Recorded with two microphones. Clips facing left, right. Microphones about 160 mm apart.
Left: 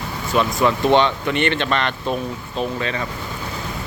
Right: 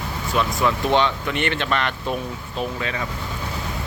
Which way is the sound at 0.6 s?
Centre (ahead or behind).